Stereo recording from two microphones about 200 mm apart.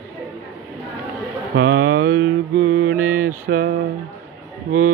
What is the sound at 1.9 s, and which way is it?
Mantra, 90° right.